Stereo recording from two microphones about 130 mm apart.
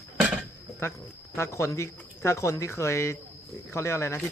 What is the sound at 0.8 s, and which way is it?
Speech, 20° left (ahead or behind).